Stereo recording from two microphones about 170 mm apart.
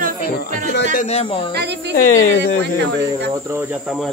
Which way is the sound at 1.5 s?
80° right.